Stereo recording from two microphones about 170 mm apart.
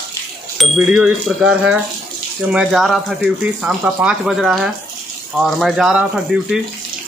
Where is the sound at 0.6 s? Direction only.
5° right (ahead or behind).